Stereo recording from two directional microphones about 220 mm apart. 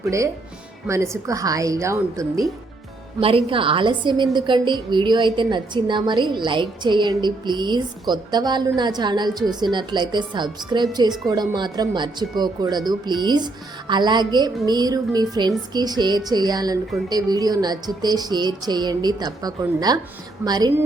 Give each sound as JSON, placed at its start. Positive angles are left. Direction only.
{"t": 0.0, "sound": "music", "side_deg": -15}
{"t": 3.2, "sound": "a woman's voice", "side_deg": -25}
{"t": 17.1, "sound": "music", "side_deg": -20}